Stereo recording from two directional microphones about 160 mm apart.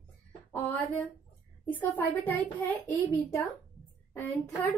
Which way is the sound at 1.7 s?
10° left (ahead or behind).